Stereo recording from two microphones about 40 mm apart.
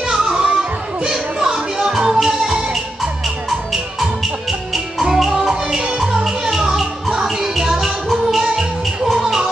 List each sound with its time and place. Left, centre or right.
0.0 s children playing: centre
0.6 s music: centre
4.2 s music: centre